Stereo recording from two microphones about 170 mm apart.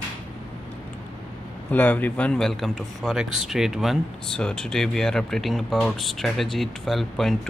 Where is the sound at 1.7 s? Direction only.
10° left (ahead or behind).